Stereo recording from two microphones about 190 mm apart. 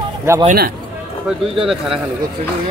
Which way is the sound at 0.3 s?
15° right (ahead or behind).